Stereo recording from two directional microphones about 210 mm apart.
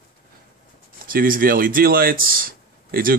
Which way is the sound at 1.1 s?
40° right (ahead or behind).